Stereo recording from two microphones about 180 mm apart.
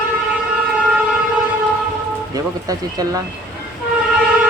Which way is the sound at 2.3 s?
20° right (ahead or behind).